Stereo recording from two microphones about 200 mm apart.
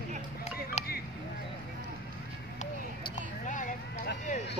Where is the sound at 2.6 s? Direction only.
40° left (ahead or behind).